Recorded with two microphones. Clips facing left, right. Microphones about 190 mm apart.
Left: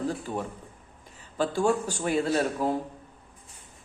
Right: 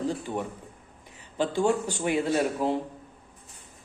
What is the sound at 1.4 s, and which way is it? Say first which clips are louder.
Speech: even; 20° right (ahead or behind).